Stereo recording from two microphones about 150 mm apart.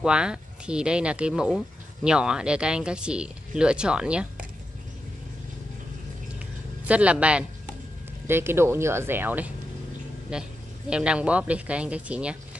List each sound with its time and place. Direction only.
0.0 s speech: 5° right (ahead or behind)
6.9 s speech: 10° right (ahead or behind)